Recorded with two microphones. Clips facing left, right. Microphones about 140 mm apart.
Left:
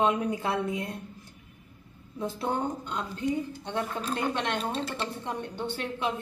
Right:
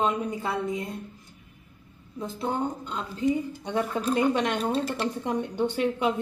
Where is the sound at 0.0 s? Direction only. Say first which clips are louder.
Left 1 dB; centre (ahead or behind).